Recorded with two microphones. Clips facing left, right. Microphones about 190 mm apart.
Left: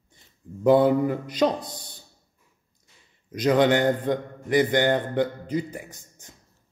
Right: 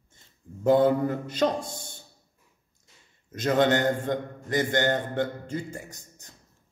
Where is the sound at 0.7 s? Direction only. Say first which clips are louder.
Left 2 dB; 15° left (ahead or behind).